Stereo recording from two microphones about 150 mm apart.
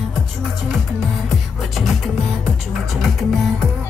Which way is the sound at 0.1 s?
Centre (ahead or behind).